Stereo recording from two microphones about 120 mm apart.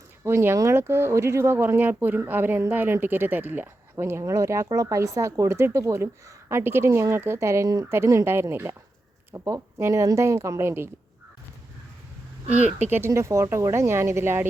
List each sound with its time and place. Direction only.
0.3 s speech: 20° right (ahead or behind)
12.8 s speech: 20° right (ahead or behind)